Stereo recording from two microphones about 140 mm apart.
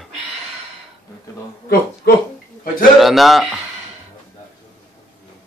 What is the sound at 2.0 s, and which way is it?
Speech, 90° left.